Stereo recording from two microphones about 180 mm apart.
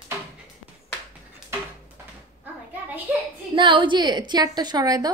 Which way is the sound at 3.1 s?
10° right (ahead or behind).